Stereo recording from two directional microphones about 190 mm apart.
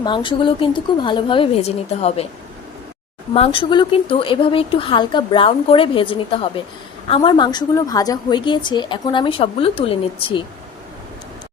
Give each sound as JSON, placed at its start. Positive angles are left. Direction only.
{"t": 0.0, "sound": "a woman's voice", "side_deg": 25}
{"t": 3.3, "sound": "a woman's voice", "side_deg": 30}